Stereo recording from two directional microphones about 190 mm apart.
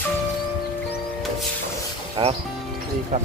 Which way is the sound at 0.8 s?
Centre (ahead or behind).